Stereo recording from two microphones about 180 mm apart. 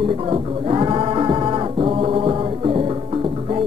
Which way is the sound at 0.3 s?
30° right (ahead or behind).